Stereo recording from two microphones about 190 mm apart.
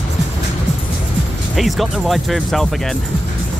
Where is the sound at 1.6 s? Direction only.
Centre (ahead or behind).